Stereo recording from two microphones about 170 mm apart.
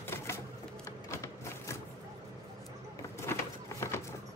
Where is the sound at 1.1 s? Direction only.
15° left (ahead or behind).